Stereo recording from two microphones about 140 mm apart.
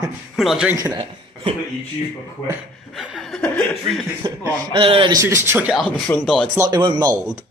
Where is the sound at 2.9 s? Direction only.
Centre (ahead or behind).